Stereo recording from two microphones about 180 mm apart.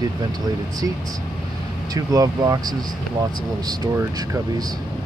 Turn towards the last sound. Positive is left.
turn(degrees=-20)  # may be behind; listen again after turning